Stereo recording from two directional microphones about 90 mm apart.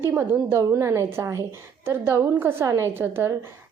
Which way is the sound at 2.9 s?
25° right (ahead or behind).